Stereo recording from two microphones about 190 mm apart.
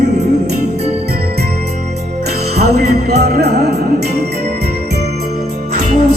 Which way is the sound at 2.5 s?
55° right (ahead or behind).